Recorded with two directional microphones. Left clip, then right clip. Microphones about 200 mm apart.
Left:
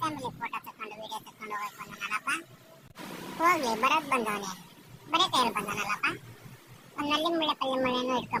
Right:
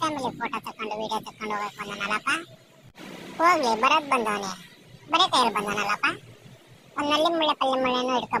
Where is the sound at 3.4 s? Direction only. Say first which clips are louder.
Right 5 dB; 15° right (ahead or behind).